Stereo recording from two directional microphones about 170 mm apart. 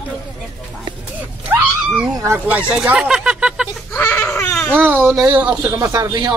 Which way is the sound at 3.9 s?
10° left (ahead or behind).